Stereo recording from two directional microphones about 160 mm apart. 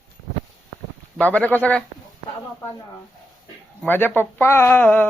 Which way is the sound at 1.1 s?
10° left (ahead or behind).